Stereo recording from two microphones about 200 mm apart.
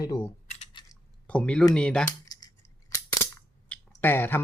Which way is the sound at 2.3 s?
20° left (ahead or behind).